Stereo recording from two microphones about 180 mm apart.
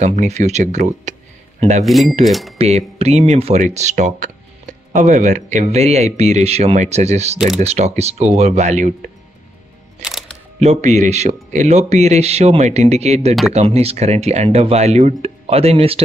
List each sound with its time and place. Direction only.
0.0 s speech: 40° right (ahead or behind)
1.9 s speech: centre (ahead or behind)
2.5 s speech: 35° right (ahead or behind)
10.6 s speech: 40° right (ahead or behind)